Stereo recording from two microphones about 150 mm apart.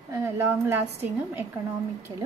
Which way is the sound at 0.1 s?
15° right (ahead or behind).